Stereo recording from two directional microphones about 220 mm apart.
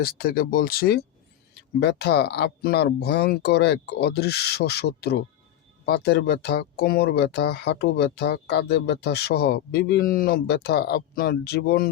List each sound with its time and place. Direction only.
0.0 s speech: 45° left (ahead or behind)